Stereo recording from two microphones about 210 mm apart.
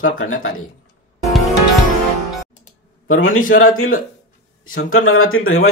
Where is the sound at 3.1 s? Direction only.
70° left (ahead or behind).